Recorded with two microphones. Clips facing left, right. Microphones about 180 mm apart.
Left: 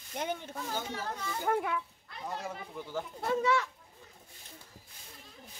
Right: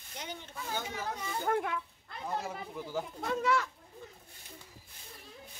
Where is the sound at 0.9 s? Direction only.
10° right (ahead or behind).